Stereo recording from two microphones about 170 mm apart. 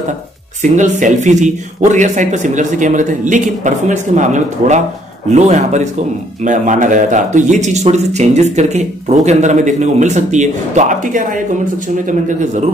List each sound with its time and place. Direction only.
0.6 s speech: 45° right (ahead or behind)